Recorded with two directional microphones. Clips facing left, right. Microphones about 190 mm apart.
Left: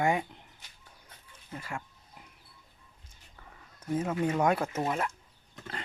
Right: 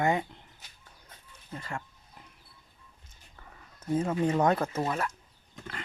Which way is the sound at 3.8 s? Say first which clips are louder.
Right 2 dB; 15° left (ahead or behind).